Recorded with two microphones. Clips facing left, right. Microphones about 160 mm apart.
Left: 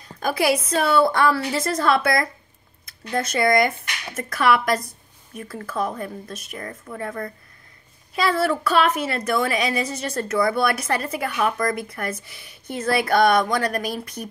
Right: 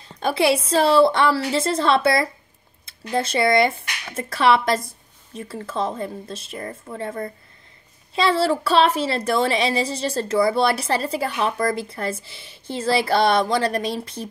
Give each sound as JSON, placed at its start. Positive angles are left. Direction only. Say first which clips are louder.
{"t": 0.2, "sound": "a woman's voice", "louder": "right 2 dB", "side_deg": -25}